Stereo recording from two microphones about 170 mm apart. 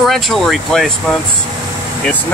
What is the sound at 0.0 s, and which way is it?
Speech, centre (ahead or behind).